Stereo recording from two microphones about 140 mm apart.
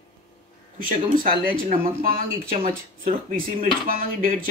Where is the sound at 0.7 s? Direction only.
85° right.